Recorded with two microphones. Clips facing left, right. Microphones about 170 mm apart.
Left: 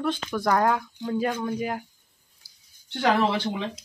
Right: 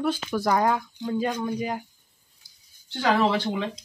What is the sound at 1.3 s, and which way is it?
Speech, 10° right (ahead or behind).